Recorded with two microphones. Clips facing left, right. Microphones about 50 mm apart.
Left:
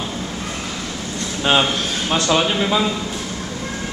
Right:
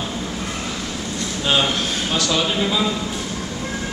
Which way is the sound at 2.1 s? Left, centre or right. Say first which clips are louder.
Left 4 dB; left.